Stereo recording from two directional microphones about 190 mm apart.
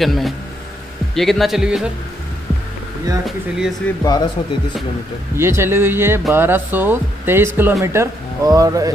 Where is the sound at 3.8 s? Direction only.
10° left (ahead or behind).